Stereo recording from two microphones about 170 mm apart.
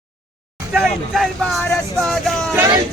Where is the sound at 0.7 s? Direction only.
Centre (ahead or behind).